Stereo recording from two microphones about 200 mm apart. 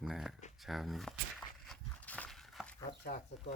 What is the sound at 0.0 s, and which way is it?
A man's voice, centre (ahead or behind).